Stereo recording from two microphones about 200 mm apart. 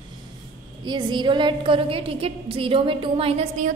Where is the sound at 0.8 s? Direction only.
20° right (ahead or behind).